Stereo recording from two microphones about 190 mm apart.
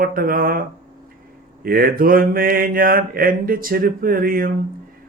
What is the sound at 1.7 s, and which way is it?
Mantra, 50° right (ahead or behind).